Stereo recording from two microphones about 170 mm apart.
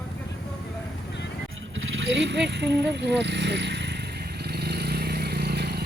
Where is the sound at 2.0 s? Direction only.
90° right.